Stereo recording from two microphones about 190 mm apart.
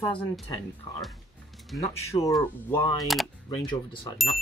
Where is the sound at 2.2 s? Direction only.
20° left (ahead or behind).